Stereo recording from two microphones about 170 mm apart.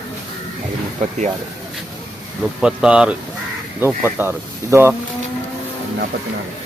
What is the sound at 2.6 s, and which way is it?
Speech, 5° right (ahead or behind).